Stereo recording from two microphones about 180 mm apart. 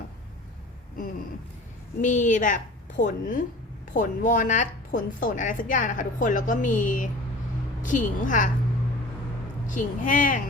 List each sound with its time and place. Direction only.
2.0 s a woman's voice: 45° left (ahead or behind)
9.6 s a woman's voice: 45° left (ahead or behind)